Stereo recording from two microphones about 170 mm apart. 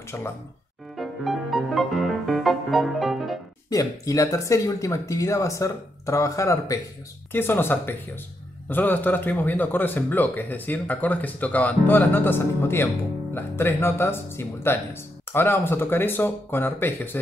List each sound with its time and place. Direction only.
0.1 s a man's voice: 15° left (ahead or behind)
0.9 s music: centre (ahead or behind)
3.7 s a man's voice: 20° left (ahead or behind)